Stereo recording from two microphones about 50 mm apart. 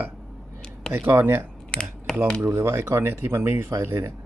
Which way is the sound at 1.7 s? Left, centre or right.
Centre.